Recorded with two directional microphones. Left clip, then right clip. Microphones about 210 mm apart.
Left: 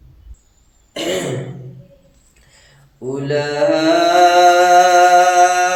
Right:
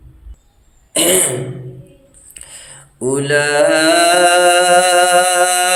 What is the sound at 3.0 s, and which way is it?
Mantra, 50° right (ahead or behind).